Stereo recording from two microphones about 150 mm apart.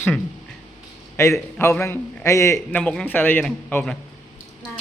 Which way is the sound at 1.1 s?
15° left (ahead or behind).